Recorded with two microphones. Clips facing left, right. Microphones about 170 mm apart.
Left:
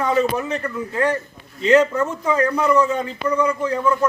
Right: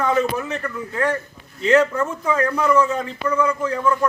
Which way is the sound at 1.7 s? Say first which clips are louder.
Left 1 dB; 15° left (ahead or behind).